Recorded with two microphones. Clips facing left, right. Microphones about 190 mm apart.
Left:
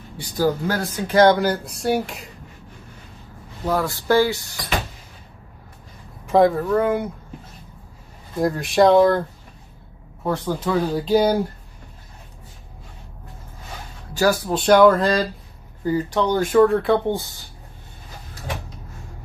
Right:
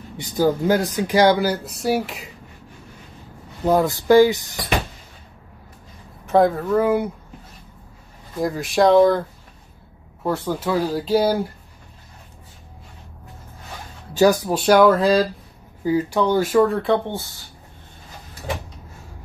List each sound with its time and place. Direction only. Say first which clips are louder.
0.2 s speech: right 2 dB; 20° right (ahead or behind); by 2.3 s centre (ahead or behind)
3.6 s speech: right 4 dB; 20° right (ahead or behind)
6.2 s speech: left 1 dB; centre (ahead or behind)
8.4 s speech: left 2 dB; centre (ahead or behind)
10.2 s speech: even; 5° right (ahead or behind)
14.1 s speech: right 3 dB; 20° right (ahead or behind)
14.6 s speech: left 1 dB; 5° right (ahead or behind)